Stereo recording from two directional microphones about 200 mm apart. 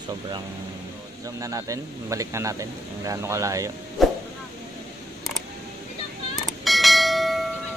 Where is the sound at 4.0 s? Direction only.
Centre (ahead or behind).